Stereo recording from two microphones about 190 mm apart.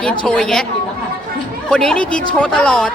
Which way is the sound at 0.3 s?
5° left (ahead or behind).